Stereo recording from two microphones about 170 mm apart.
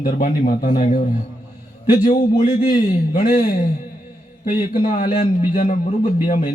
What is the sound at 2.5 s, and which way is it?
Speech, 55° left (ahead or behind).